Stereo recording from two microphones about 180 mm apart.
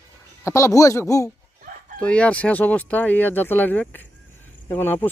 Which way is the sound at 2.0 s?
5° left (ahead or behind).